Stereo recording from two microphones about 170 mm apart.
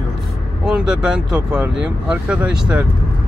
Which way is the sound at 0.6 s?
5° right (ahead or behind).